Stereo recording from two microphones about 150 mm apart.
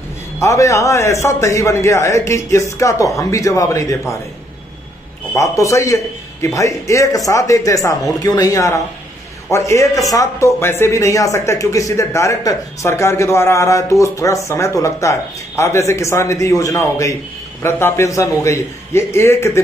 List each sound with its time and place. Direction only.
0.4 s a man's voice: 20° left (ahead or behind)
5.3 s a man's voice: 20° left (ahead or behind)